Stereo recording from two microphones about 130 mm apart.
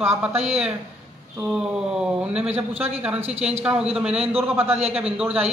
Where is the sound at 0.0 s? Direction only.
20° right (ahead or behind).